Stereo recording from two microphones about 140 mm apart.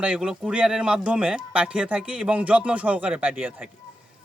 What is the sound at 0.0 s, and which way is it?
Speech, 5° right (ahead or behind).